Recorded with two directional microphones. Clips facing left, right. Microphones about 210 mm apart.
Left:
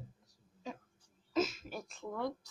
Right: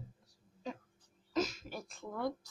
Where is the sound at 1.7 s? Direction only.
5° right (ahead or behind).